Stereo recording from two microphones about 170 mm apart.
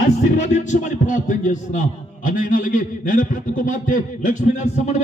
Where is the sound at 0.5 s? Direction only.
45° left (ahead or behind).